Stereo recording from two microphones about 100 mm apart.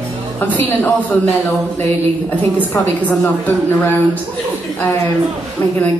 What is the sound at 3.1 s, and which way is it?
Speech, 15° left (ahead or behind).